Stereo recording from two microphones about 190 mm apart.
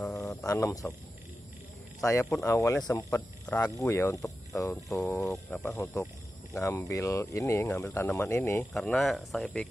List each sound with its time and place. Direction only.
0.5 s speech: 15° left (ahead or behind)
2.0 s speech: 15° left (ahead or behind)
8.7 s speech: centre (ahead or behind)